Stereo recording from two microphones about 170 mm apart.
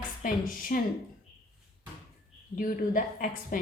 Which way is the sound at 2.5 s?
50° left (ahead or behind).